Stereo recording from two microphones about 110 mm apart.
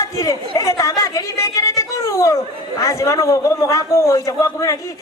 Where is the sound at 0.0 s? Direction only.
30° left (ahead or behind).